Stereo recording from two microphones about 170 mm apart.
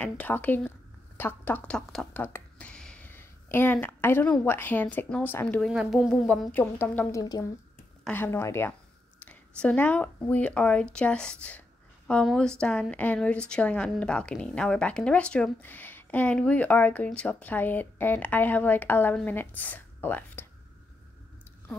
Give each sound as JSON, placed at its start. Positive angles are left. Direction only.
{"t": 0.0, "sound": "speech", "side_deg": 10}
{"t": 5.7, "sound": "a woman's voice", "side_deg": 0}